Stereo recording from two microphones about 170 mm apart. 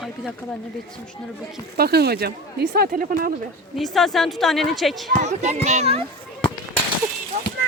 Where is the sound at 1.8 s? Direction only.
70° right (ahead or behind).